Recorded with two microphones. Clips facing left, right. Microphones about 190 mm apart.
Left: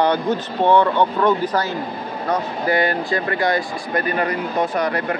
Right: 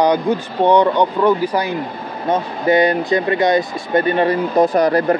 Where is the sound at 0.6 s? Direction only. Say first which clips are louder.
Right 3 dB; 15° right (ahead or behind).